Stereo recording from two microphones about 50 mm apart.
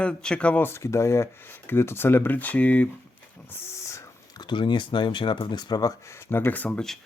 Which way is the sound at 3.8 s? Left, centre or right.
Left.